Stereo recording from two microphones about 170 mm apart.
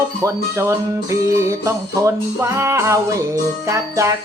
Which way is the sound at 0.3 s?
15° right (ahead or behind).